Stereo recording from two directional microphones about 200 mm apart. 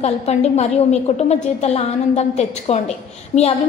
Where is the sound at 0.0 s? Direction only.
35° left (ahead or behind).